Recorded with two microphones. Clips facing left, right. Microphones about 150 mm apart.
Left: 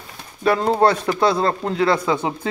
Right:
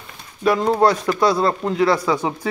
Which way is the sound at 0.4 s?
30° left (ahead or behind).